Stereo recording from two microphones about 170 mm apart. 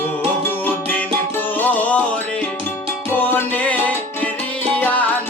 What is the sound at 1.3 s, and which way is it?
Music, 10° left (ahead or behind).